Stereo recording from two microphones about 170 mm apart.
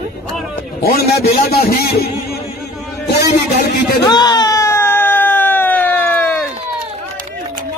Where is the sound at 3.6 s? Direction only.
75° left (ahead or behind).